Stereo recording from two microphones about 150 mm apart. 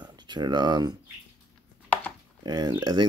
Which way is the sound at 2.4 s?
25° right (ahead or behind).